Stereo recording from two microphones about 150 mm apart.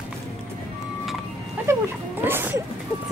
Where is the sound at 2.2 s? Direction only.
15° right (ahead or behind).